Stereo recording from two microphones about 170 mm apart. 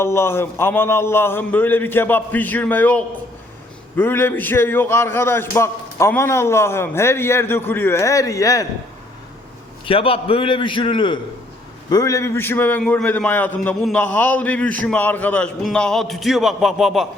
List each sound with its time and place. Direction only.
0.0 s a man's voice: 15° left (ahead or behind)
9.8 s a man's voice: 30° left (ahead or behind); by 17.1 s centre (ahead or behind)